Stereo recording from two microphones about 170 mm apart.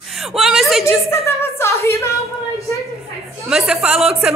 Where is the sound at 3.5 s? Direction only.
5° right (ahead or behind).